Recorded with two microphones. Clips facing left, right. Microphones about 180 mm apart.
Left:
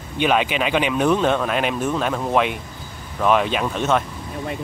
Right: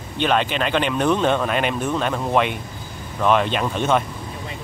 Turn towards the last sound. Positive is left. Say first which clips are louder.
# even
turn(degrees=0)  # may be behind; listen again after turning